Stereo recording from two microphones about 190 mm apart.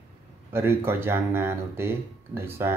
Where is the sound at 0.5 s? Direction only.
10° right (ahead or behind).